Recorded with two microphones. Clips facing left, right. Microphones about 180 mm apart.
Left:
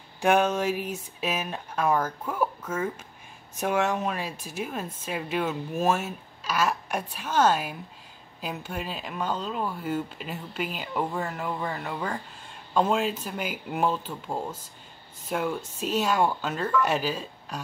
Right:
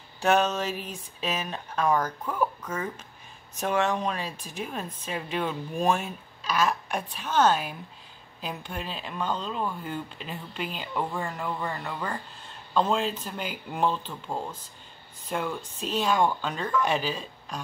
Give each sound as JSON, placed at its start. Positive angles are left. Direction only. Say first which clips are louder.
{"t": 0.2, "sound": "speech", "louder": "left 1 dB", "side_deg": 10}